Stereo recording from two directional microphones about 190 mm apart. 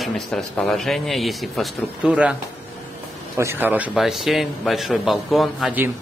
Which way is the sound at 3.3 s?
10° right (ahead or behind).